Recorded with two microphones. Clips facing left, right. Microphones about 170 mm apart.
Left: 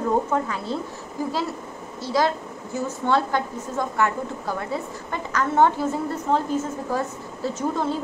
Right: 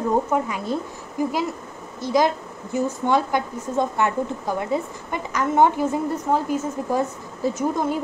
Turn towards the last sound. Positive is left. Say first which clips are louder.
# right 2 dB
turn(degrees=-15)  # may be behind; listen again after turning